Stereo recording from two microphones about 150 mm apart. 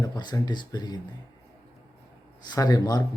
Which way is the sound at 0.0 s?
30° left (ahead or behind).